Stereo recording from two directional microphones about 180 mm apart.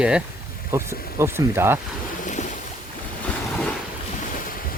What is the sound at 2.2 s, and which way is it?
Boat, 45° left (ahead or behind).